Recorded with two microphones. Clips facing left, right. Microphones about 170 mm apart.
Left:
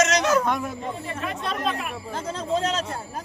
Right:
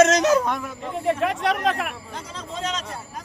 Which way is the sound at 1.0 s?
70° right (ahead or behind).